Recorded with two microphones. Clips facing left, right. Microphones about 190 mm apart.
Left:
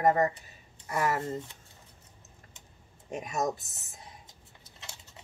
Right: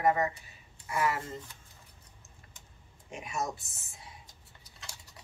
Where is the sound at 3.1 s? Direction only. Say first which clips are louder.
Left 4 dB; 40° left (ahead or behind).